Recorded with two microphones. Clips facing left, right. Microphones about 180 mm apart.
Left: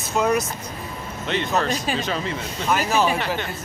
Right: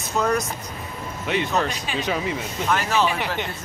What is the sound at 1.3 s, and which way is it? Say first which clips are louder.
Speech: left 1 dB; 10° right (ahead or behind).